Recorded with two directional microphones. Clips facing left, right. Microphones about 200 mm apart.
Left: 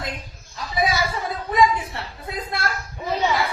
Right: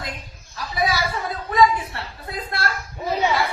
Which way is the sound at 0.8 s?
20° left (ahead or behind).